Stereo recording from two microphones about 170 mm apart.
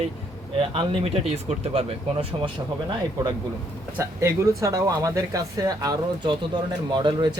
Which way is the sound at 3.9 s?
15° right (ahead or behind).